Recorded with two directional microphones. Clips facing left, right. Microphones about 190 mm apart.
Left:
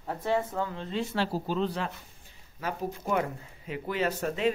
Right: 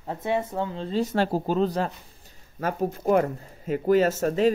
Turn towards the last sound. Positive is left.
turn(degrees=-40)  # may be behind; listen again after turning